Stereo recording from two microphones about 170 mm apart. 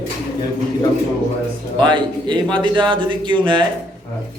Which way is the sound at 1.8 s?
25° right (ahead or behind).